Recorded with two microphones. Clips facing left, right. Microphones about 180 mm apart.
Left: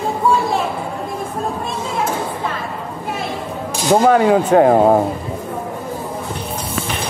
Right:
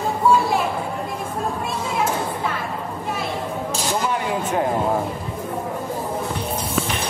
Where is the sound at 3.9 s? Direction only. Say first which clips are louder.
Left 13 dB; 80° left; by 5.0 s 60° left (ahead or behind).